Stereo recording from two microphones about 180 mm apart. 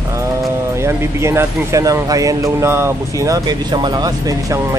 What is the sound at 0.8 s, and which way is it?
Speech, 15° right (ahead or behind).